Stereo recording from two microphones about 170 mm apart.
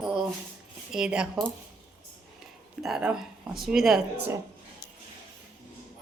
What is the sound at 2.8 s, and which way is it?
A woman's voice, 5° right (ahead or behind).